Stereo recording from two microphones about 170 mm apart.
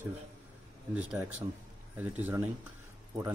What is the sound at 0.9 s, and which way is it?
Speech, 10° right (ahead or behind).